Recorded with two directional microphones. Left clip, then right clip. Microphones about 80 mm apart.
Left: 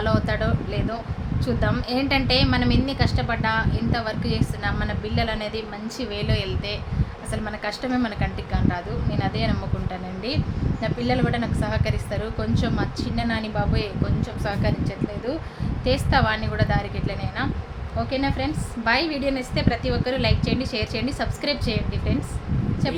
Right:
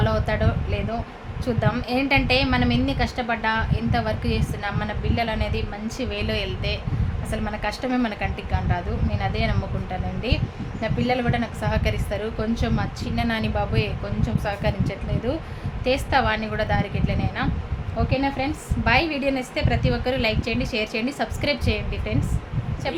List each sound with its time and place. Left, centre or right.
0.0 s a sound: right
1.5 s a woman's voice: right
10.8 s a woman's voice: right